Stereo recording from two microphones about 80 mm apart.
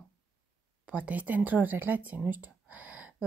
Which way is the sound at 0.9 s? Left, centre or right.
Centre.